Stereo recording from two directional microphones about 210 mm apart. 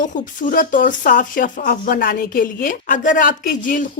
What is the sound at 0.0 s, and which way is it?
A woman's voice, 40° left (ahead or behind).